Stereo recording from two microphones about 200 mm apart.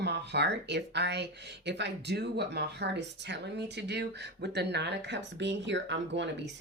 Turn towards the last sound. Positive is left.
turn(degrees=-60)  # may be behind; listen again after turning